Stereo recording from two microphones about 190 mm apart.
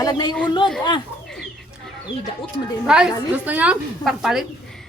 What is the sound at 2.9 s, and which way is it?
A woman's voice, 5° right (ahead or behind).